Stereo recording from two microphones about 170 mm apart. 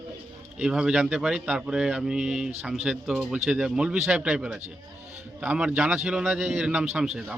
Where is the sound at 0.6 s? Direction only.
5° right (ahead or behind).